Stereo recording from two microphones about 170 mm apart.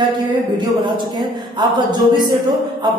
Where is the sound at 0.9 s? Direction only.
25° right (ahead or behind).